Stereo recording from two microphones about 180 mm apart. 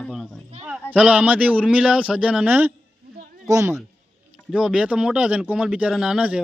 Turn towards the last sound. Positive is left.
turn(degrees=-5)  # may be behind; listen again after turning